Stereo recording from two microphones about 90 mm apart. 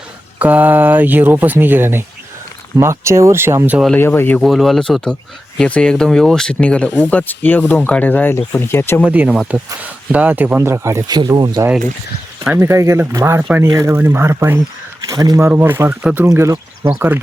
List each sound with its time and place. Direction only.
0.3 s speech: 15° right (ahead or behind)
3.9 s speech: 25° left (ahead or behind)
4.4 s speech: centre (ahead or behind); by 9.0 s 25° left (ahead or behind)
9.0 s speech: 15° right (ahead or behind); by 11.0 s 30° right (ahead or behind)
11.0 s speech: 50° right (ahead or behind)
12.5 s speech: 30° right (ahead or behind)
15.0 s speech: 40° right (ahead or behind)
15.4 s speech: 25° right (ahead or behind)
16.2 s speech: 35° right (ahead or behind)